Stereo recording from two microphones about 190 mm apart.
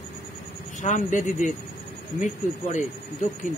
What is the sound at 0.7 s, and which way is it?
Speech, 40° left (ahead or behind).